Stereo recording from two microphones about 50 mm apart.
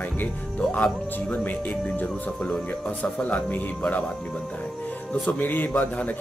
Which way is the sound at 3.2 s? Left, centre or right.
Left.